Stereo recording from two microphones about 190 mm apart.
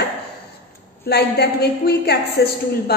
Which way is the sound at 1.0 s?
60° left (ahead or behind).